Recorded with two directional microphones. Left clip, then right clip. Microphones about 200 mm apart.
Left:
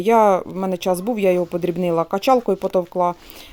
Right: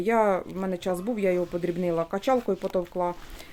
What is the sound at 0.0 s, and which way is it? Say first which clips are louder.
Speech: left 9 dB; 35° left (ahead or behind).